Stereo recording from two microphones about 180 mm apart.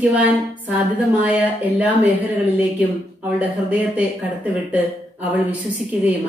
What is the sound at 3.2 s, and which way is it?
Speech, 10° right (ahead or behind).